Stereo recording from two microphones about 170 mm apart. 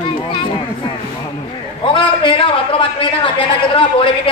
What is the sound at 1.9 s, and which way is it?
A man's voice, 30° left (ahead or behind).